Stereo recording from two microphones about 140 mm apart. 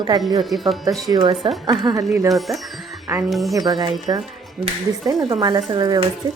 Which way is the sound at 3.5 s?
30° right (ahead or behind).